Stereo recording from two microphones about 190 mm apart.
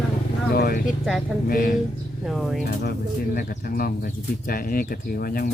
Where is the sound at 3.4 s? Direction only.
50° left (ahead or behind).